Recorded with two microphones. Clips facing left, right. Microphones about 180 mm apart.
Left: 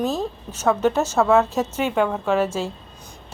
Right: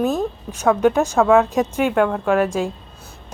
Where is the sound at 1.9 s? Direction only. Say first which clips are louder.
Right 3 dB; centre (ahead or behind).